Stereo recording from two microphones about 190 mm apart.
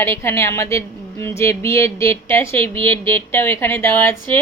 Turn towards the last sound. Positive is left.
turn(degrees=10)  # may be behind; listen again after turning